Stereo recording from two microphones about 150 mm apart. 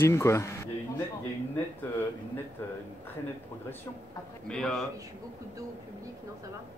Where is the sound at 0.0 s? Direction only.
20° left (ahead or behind).